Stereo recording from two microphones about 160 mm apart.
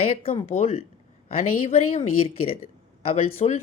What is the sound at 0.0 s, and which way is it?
Speech, 35° left (ahead or behind).